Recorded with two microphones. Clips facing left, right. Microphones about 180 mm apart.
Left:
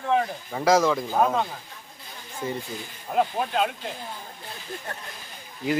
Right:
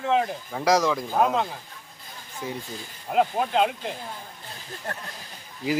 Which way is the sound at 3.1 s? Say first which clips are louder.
Right 2 dB; 15° right (ahead or behind).